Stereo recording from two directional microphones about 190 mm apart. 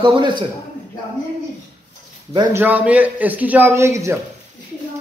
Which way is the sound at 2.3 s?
10° right (ahead or behind).